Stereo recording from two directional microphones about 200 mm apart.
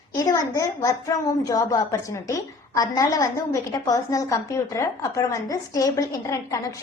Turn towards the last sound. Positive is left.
turn(degrees=15)  # may be behind; listen again after turning